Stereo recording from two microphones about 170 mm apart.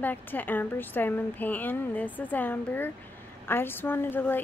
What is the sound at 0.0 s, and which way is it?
A woman's voice, 10° left (ahead or behind).